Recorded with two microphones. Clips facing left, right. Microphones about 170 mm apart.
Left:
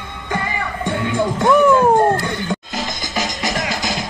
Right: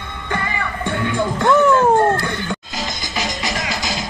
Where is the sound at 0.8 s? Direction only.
15° left (ahead or behind).